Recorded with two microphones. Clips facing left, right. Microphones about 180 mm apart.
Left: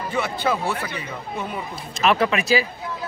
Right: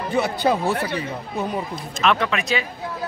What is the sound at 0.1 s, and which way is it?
Speech, 40° right (ahead or behind).